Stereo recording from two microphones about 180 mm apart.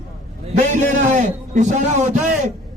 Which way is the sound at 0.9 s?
45° right (ahead or behind).